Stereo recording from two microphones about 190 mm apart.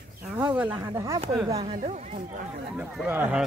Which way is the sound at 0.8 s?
15° right (ahead or behind).